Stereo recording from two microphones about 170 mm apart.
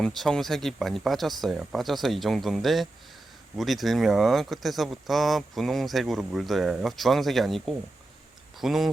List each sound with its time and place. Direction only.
0.0 s speech: centre (ahead or behind)